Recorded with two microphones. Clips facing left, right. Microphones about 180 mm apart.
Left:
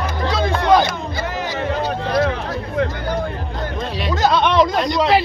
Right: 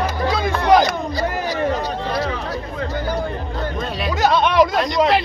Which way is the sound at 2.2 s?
60° left (ahead or behind).